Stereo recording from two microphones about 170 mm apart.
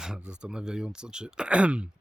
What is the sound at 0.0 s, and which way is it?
Speech, 5° right (ahead or behind).